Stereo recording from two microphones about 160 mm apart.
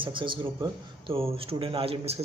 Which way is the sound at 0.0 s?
30° right (ahead or behind).